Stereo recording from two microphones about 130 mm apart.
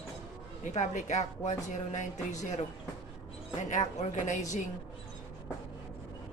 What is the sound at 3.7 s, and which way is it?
Speech, 70° left (ahead or behind).